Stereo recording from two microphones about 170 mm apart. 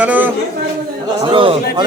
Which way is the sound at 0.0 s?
10° right (ahead or behind).